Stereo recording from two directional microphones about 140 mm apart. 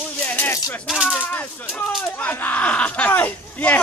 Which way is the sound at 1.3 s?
10° left (ahead or behind).